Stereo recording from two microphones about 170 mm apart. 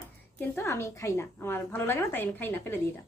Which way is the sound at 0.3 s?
10° left (ahead or behind).